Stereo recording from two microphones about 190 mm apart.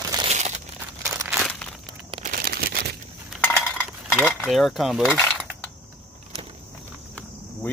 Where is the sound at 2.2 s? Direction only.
50° right (ahead or behind).